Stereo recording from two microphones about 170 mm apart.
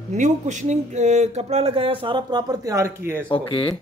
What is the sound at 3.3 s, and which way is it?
Speech, 30° left (ahead or behind).